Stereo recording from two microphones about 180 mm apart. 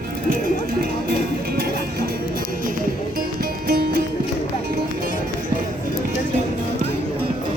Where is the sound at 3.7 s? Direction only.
60° right (ahead or behind).